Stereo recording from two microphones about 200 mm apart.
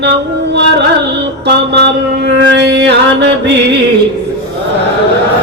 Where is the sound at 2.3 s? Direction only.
60° right (ahead or behind).